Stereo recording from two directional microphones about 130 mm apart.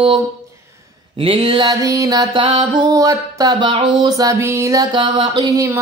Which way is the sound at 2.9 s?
30° right (ahead or behind).